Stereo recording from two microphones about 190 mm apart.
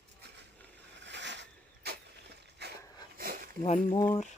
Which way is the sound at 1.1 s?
70° right (ahead or behind).